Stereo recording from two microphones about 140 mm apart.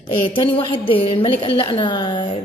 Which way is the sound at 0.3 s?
35° left (ahead or behind).